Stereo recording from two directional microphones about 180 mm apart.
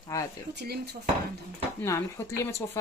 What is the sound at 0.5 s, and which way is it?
Speech, 65° right (ahead or behind).